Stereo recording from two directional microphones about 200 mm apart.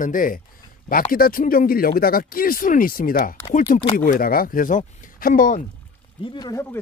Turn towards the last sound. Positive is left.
turn(degrees=20)  # may be behind; listen again after turning